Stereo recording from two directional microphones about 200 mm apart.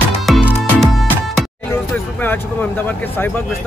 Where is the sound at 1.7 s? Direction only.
10° left (ahead or behind).